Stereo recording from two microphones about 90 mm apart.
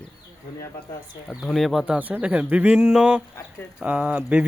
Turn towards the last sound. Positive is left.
turn(degrees=-15)  # may be behind; listen again after turning